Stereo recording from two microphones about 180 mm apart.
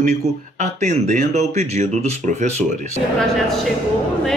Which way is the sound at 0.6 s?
40° right (ahead or behind).